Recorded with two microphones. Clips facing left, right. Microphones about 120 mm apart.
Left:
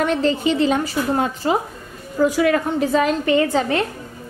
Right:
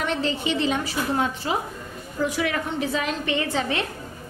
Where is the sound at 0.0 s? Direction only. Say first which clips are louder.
Left 7 dB; 40° left (ahead or behind).